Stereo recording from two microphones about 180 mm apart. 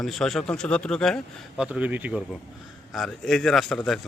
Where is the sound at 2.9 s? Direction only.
Centre (ahead or behind).